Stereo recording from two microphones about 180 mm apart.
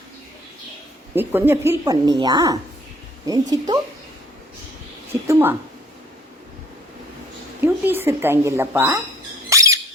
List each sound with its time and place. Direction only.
1.1 s a woman's voice: 10° right (ahead or behind)
5.3 s speech: 10° right (ahead or behind)
7.6 s speech: 10° right (ahead or behind)
9.5 s squawk: 15° right (ahead or behind)